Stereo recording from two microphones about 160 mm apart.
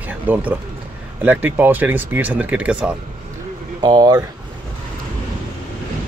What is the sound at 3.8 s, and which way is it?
Speech, 25° right (ahead or behind).